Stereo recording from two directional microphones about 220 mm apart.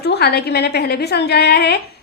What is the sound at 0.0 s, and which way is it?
A woman's voice, 45° left (ahead or behind).